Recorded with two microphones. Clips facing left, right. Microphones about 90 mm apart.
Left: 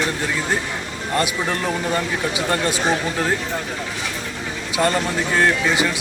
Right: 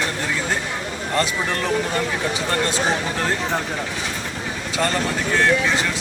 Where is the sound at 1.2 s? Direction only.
10° left (ahead or behind).